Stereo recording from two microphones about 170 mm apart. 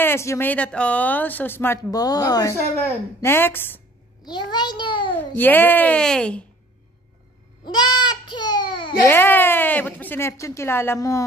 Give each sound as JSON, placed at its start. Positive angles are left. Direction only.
{"t": 0.0, "sound": "speech", "side_deg": 15}
{"t": 4.2, "sound": "a child's voice", "side_deg": 25}
{"t": 5.1, "sound": "speech", "side_deg": 10}
{"t": 7.6, "sound": "baby cry", "side_deg": 25}
{"t": 9.0, "sound": "speech", "side_deg": 10}